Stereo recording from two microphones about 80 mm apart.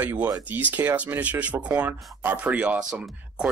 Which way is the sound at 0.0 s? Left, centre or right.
Right.